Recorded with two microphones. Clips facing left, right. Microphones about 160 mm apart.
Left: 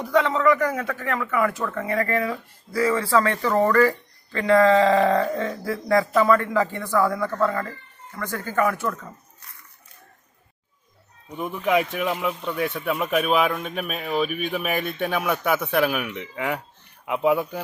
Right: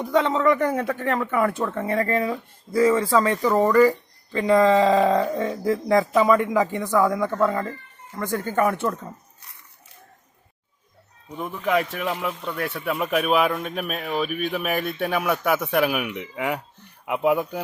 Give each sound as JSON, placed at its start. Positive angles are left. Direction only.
{"t": 0.0, "sound": "speech", "side_deg": -25}
{"t": 11.3, "sound": "speech", "side_deg": 5}